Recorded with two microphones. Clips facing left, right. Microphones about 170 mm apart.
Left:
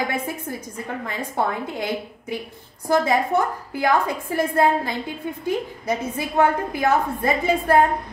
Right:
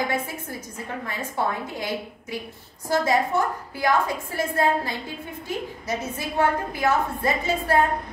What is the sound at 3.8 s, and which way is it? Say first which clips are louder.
Speech: left 2 dB; 50° left (ahead or behind).